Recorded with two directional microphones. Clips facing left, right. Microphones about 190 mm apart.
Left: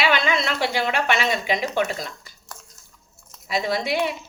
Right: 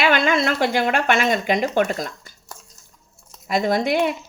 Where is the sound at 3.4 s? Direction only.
50° right (ahead or behind).